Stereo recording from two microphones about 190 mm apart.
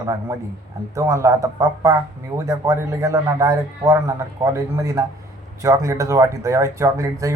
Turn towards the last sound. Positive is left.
turn(degrees=-15)  # may be behind; listen again after turning